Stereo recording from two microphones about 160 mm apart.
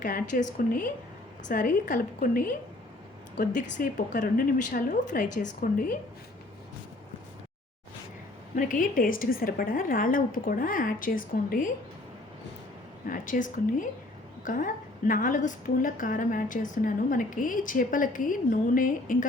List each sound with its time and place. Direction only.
0.0 s a woman's voice: 60° left (ahead or behind)
8.5 s a woman's voice: 55° left (ahead or behind)
13.1 s a woman's voice: 55° left (ahead or behind)